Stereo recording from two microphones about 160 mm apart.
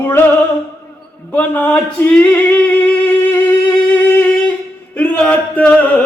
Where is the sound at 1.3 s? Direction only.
10° left (ahead or behind).